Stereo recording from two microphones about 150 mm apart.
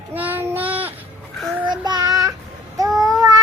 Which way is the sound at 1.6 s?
30° right (ahead or behind).